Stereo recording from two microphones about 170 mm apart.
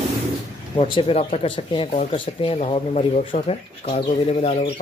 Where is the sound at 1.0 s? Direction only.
35° left (ahead or behind).